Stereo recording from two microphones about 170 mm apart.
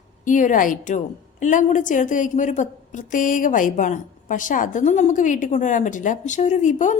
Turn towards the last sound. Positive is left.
turn(degrees=45)  # may be behind; listen again after turning